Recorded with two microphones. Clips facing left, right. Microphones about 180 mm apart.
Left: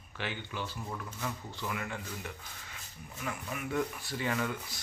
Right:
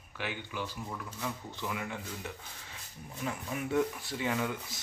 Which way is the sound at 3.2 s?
30° right (ahead or behind).